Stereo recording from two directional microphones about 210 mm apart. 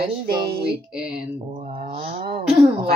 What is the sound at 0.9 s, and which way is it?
Speech, 5° right (ahead or behind).